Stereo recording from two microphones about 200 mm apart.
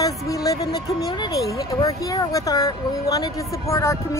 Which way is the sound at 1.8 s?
15° left (ahead or behind).